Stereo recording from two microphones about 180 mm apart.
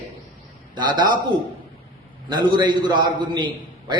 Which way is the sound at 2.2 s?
25° right (ahead or behind).